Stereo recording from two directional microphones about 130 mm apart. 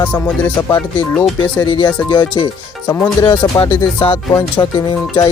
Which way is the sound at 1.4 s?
35° left (ahead or behind).